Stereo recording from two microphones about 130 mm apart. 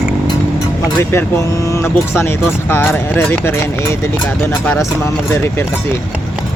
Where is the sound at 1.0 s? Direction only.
20° left (ahead or behind).